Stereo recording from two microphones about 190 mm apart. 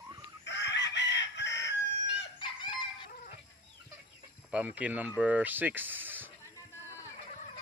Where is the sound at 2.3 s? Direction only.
25° left (ahead or behind).